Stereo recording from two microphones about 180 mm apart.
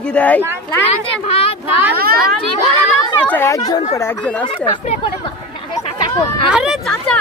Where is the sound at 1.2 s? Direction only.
35° left (ahead or behind).